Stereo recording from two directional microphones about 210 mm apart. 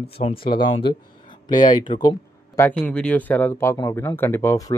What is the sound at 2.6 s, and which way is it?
Speech, 5° left (ahead or behind).